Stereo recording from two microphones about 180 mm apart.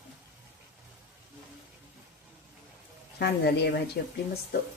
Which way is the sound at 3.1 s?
65° left (ahead or behind).